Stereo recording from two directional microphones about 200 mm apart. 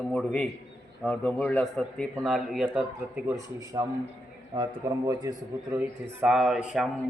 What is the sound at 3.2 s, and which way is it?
A man's voice, 15° right (ahead or behind).